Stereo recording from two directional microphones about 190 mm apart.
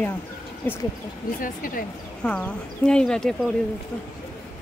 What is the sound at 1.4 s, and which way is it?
Speech, 45° left (ahead or behind).